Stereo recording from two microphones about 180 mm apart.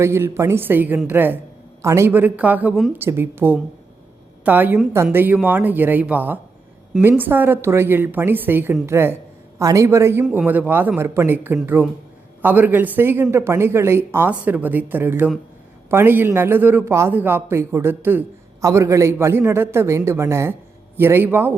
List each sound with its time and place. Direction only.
0.0 s speech: 15° right (ahead or behind)